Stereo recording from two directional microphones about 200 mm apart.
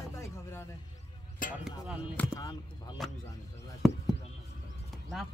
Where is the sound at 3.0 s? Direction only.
Centre (ahead or behind).